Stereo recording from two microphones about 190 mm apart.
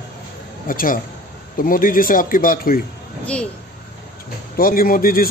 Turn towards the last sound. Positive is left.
turn(degrees=50)  # may be behind; listen again after turning